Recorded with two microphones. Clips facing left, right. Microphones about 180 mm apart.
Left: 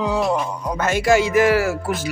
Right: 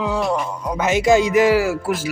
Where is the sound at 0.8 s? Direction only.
20° right (ahead or behind).